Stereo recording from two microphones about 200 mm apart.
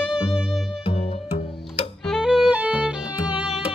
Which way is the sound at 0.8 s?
25° left (ahead or behind).